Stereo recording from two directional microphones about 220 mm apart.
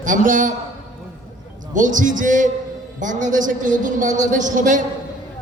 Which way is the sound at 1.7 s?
35° right (ahead or behind).